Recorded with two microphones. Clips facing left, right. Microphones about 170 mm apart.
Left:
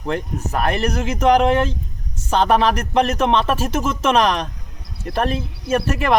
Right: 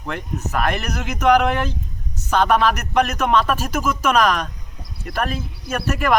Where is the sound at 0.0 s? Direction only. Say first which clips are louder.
Left 4 dB; 30° left (ahead or behind).